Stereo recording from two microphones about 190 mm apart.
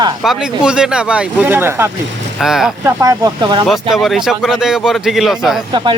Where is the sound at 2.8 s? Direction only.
20° right (ahead or behind).